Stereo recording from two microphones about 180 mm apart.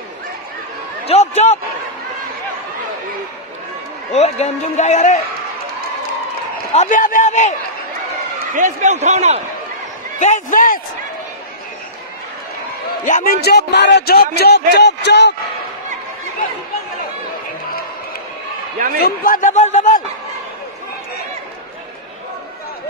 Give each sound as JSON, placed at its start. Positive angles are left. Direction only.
{"t": 1.0, "sound": "a man's voice", "side_deg": 35}
{"t": 4.1, "sound": "a man's voice", "side_deg": 35}
{"t": 6.7, "sound": "a man's voice", "side_deg": 45}
{"t": 8.5, "sound": "speech", "side_deg": -45}
{"t": 10.2, "sound": "a man's voice", "side_deg": 45}
{"t": 13.0, "sound": "a man's voice", "side_deg": 50}
{"t": 18.9, "sound": "a man's voice", "side_deg": 55}